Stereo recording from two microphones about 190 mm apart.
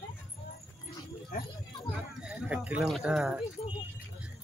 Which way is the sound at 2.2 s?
5° right (ahead or behind).